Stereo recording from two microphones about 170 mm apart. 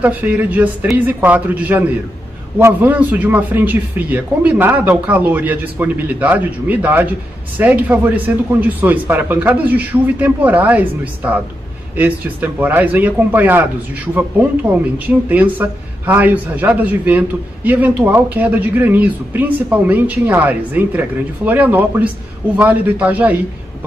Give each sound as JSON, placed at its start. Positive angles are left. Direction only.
{"t": 0.0, "sound": "a man's voice", "side_deg": -10}